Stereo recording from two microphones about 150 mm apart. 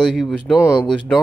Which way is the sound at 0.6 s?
20° left (ahead or behind).